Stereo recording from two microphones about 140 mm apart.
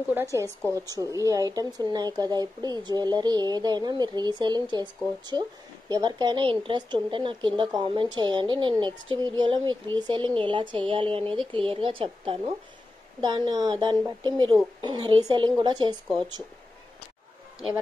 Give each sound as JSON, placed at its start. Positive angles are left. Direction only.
{"t": 0.1, "sound": "speech", "side_deg": -20}